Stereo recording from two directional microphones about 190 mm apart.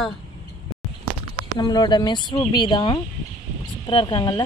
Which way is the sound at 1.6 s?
20° left (ahead or behind).